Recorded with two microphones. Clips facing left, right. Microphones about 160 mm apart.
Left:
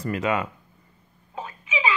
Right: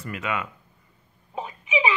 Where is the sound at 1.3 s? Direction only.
15° right (ahead or behind).